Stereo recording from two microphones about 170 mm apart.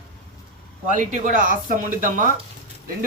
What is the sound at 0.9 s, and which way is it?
Speech, 50° right (ahead or behind).